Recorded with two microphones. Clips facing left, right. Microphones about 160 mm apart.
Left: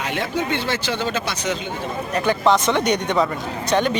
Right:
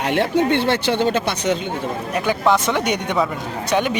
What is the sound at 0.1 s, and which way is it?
Speech, 60° right (ahead or behind).